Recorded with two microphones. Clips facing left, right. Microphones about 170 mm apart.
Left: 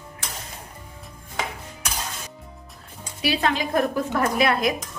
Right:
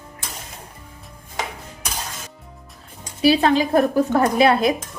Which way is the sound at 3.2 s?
35° right (ahead or behind).